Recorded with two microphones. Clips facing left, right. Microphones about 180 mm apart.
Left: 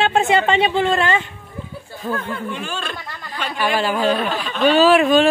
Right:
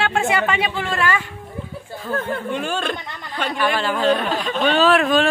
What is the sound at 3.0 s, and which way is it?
Chatter, 20° right (ahead or behind).